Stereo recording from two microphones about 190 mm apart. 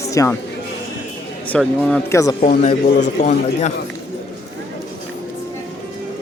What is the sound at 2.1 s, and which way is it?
Speech, 15° left (ahead or behind).